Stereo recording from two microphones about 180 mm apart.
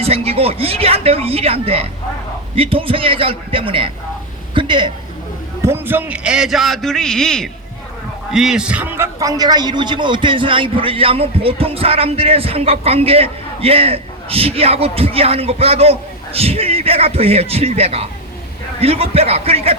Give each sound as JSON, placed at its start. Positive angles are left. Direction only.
{"t": 0.0, "sound": "a man's voice", "side_deg": -35}
{"t": 5.6, "sound": "a man's voice", "side_deg": -10}